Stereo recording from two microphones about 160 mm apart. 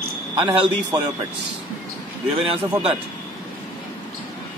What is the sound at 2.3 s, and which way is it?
Speech, 35° right (ahead or behind).